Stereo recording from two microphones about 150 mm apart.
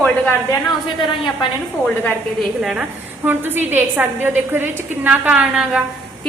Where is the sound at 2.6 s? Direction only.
5° right (ahead or behind).